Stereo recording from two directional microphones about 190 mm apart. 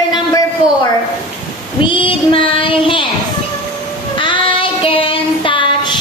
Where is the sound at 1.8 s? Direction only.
25° left (ahead or behind).